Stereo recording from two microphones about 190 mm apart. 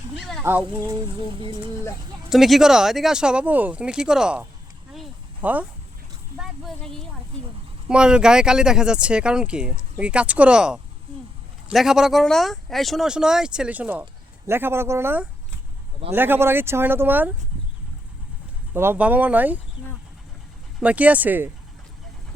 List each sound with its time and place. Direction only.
0.4 s speech: 15° right (ahead or behind)
0.9 s speech: 25° right (ahead or behind)
2.3 s speech: centre (ahead or behind)
4.9 s snake: 5° right (ahead or behind)
6.3 s speech: centre (ahead or behind)
18.7 s speech: 10° right (ahead or behind)
20.8 s speech: 5° right (ahead or behind)